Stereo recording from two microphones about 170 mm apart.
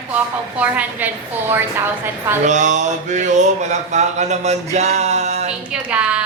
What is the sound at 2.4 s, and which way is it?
Mantra, 45° right (ahead or behind).